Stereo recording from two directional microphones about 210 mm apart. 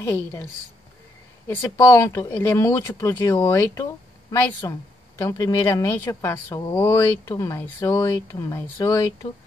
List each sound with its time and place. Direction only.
0.0 s speech: 10° left (ahead or behind)
1.5 s speech: 15° left (ahead or behind)